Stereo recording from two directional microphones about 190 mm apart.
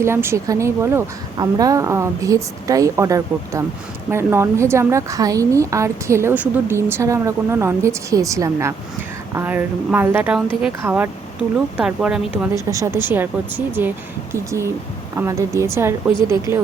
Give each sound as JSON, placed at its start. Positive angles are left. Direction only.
{"t": 0.0, "sound": "a woman's voice", "side_deg": -15}